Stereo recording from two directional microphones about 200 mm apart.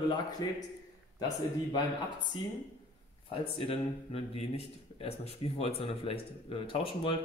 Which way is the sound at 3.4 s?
30° left (ahead or behind).